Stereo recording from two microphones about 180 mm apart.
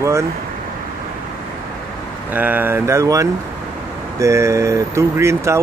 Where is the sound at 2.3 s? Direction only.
10° right (ahead or behind).